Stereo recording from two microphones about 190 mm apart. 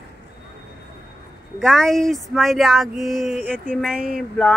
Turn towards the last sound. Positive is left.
turn(degrees=-5)  # may be behind; listen again after turning